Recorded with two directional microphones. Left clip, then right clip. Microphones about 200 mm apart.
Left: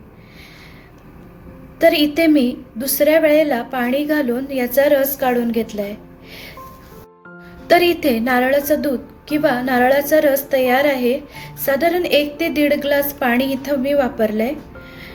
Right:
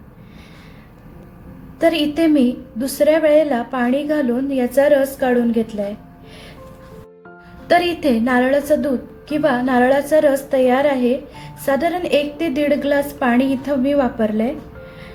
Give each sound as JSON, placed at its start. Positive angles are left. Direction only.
{"t": 1.8, "sound": "a woman's voice", "side_deg": 5}
{"t": 7.7, "sound": "a woman's voice", "side_deg": 5}